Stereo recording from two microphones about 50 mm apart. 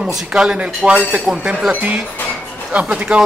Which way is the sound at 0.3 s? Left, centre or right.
Right.